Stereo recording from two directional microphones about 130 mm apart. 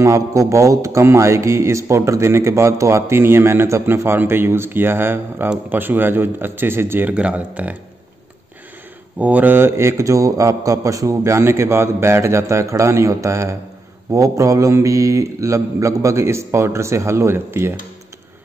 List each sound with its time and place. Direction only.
0.0 s speech: 25° right (ahead or behind)
9.2 s speech: 10° right (ahead or behind)